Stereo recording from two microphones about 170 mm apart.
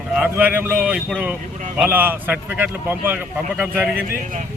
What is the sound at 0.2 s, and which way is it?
A man's voice, 10° right (ahead or behind).